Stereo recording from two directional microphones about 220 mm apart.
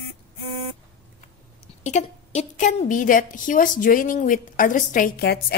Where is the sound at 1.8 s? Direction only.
30° left (ahead or behind).